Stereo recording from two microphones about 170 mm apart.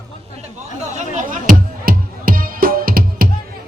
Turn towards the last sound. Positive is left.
turn(degrees=-55)  # may be behind; listen again after turning